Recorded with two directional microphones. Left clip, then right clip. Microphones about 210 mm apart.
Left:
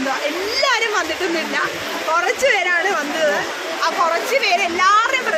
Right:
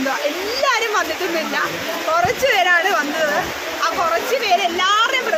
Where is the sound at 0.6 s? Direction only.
10° left (ahead or behind).